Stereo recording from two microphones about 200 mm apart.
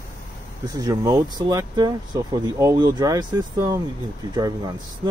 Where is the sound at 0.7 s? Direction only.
15° right (ahead or behind).